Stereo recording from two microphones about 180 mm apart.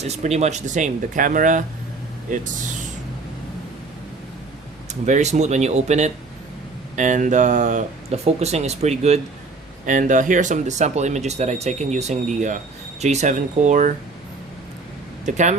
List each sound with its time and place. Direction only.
0.0 s speech: 35° right (ahead or behind)
4.9 s speech: 40° right (ahead or behind)
15.2 s speech: 40° right (ahead or behind)